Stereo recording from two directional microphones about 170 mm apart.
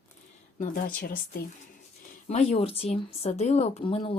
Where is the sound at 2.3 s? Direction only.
40° left (ahead or behind).